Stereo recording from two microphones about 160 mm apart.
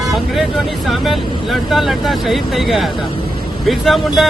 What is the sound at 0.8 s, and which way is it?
Speech, centre (ahead or behind).